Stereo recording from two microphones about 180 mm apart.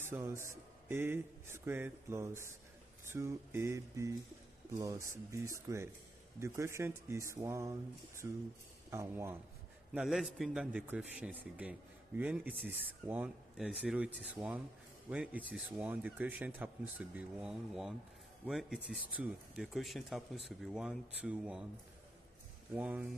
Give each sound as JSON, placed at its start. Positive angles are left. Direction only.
{"t": 0.0, "sound": "speech", "side_deg": -15}
{"t": 8.9, "sound": "speech", "side_deg": -15}
{"t": 9.9, "sound": "speech", "side_deg": 0}
{"t": 22.8, "sound": "speech", "side_deg": -5}